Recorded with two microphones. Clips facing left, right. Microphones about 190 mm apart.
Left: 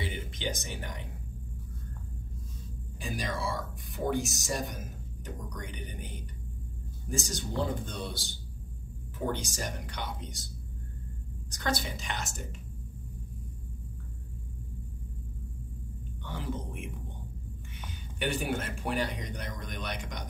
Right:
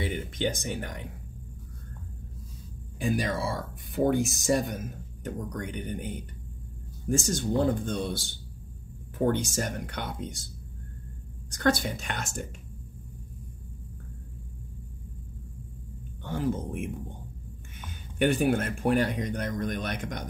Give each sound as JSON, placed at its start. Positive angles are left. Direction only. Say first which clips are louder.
{"t": 0.0, "sound": "speech", "louder": "right 6 dB", "side_deg": -50}
{"t": 3.0, "sound": "speech", "louder": "right 7 dB", "side_deg": -55}
{"t": 11.5, "sound": "speech", "louder": "right 7 dB", "side_deg": -55}
{"t": 16.2, "sound": "speech", "louder": "right 8 dB", "side_deg": -45}